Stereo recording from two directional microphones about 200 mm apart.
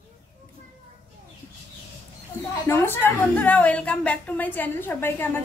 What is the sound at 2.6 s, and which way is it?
A woman's voice, 10° left (ahead or behind).